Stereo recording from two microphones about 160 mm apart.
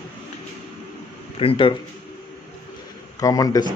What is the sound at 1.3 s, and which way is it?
Speech, 35° left (ahead or behind).